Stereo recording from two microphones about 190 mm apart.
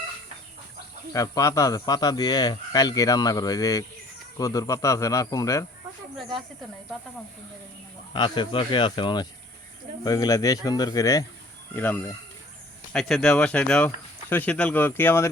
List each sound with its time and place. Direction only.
1.1 s speech: 15° left (ahead or behind)
8.1 s speech: 25° left (ahead or behind)